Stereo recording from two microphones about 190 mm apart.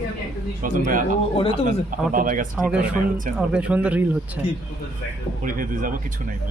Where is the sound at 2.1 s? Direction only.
45° right (ahead or behind).